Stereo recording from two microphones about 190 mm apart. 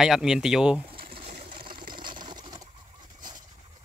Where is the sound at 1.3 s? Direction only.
50° right (ahead or behind).